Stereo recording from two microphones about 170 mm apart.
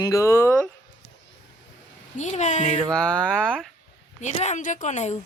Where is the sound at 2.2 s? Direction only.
45° left (ahead or behind).